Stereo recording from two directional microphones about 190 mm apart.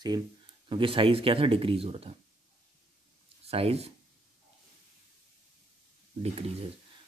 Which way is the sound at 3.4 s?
30° right (ahead or behind).